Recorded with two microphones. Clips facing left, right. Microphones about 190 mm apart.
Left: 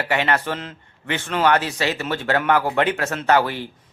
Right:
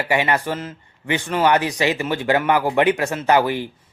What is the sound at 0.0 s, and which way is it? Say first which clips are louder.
Speech: right 1 dB; 10° right (ahead or behind).